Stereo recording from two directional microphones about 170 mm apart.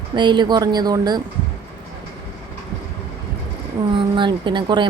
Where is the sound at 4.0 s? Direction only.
30° right (ahead or behind).